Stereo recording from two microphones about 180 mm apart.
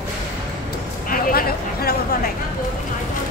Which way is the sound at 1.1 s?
55° left (ahead or behind).